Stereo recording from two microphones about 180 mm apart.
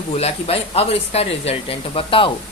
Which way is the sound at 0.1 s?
35° left (ahead or behind).